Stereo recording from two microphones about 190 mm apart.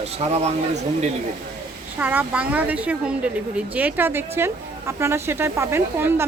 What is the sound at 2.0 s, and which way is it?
A woman's voice, 10° right (ahead or behind).